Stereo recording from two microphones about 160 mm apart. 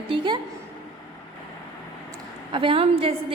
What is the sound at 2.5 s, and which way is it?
Speech, 35° right (ahead or behind).